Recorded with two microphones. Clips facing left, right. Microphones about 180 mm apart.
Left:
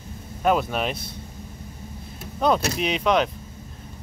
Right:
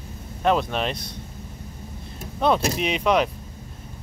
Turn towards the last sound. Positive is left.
turn(degrees=-5)  # may be behind; listen again after turning